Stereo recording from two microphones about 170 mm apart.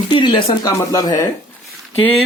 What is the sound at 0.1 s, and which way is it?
Speech, 30° left (ahead or behind).